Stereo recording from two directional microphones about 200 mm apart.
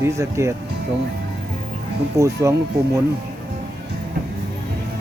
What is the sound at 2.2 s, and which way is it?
Speech, 15° right (ahead or behind).